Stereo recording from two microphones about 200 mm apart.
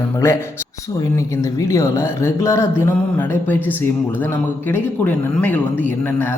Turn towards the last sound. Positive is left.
turn(degrees=10)  # may be behind; listen again after turning